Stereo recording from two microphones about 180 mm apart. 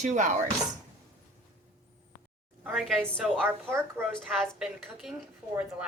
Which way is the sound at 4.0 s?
Centre (ahead or behind).